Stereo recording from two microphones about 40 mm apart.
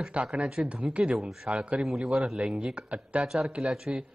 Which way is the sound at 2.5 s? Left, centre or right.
Right.